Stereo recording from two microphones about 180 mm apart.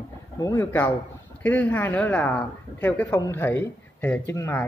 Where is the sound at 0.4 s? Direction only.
20° left (ahead or behind).